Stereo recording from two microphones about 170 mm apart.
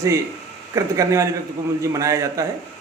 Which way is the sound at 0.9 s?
20° right (ahead or behind).